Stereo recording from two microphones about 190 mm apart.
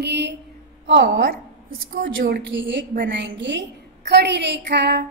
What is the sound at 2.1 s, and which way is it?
A woman's voice, 65° right (ahead or behind).